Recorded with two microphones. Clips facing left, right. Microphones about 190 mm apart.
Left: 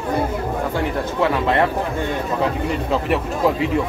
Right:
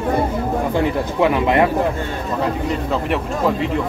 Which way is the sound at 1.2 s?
15° right (ahead or behind).